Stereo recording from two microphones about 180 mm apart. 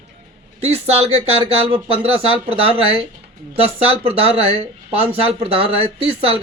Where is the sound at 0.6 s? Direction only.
35° right (ahead or behind).